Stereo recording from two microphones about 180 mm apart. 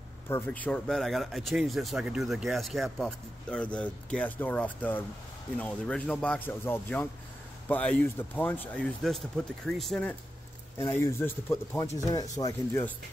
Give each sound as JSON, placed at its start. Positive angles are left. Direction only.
{"t": 0.3, "sound": "speech", "side_deg": 10}